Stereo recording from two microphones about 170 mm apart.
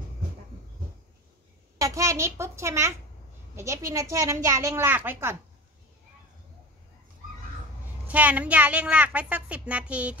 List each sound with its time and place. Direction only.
1.8 s a woman's voice: 20° right (ahead or behind)
8.1 s a woman's voice: 10° right (ahead or behind)